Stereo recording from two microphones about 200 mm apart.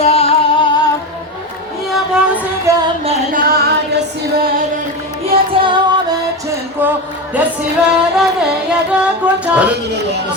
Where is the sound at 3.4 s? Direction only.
50° right (ahead or behind).